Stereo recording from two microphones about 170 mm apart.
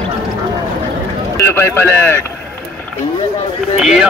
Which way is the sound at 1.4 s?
15° left (ahead or behind).